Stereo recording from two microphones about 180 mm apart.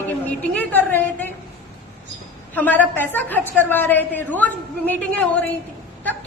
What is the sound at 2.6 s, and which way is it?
A woman's voice, 10° left (ahead or behind).